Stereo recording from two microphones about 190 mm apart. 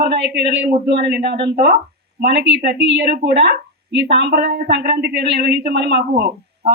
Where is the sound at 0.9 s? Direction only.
60° right (ahead or behind).